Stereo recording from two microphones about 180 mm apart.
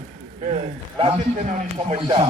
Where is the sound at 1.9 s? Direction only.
30° right (ahead or behind).